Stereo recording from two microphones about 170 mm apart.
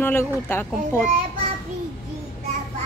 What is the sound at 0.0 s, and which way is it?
Speech, 15° left (ahead or behind).